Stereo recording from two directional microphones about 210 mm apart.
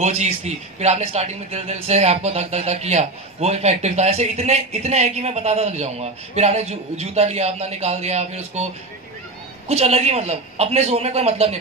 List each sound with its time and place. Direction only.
0.0 s speech: 35° right (ahead or behind)
9.7 s speech: 30° right (ahead or behind)